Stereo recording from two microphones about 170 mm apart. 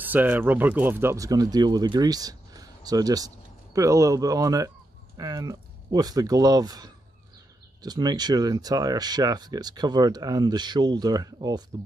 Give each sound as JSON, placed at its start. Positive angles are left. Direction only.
{"t": 0.0, "sound": "speech", "side_deg": -10}